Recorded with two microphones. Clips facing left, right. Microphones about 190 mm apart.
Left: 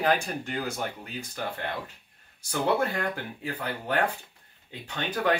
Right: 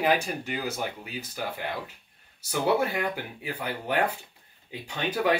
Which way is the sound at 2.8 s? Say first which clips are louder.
Right 1 dB; 10° right (ahead or behind).